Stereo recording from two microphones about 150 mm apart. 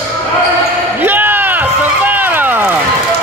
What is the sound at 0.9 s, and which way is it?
Run, 15° right (ahead or behind).